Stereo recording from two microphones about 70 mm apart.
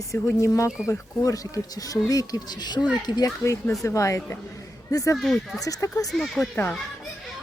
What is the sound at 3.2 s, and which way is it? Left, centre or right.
A child's voice, left.